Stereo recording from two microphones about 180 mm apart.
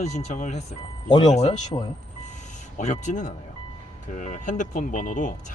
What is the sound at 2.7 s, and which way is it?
Speech, 40° left (ahead or behind).